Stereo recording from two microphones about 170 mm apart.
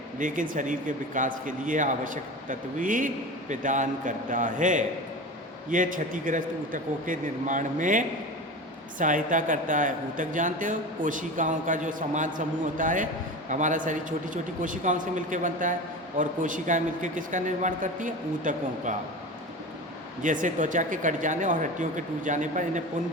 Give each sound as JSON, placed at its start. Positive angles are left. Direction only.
{"t": 0.2, "sound": "speech", "side_deg": -50}
{"t": 20.2, "sound": "speech", "side_deg": -50}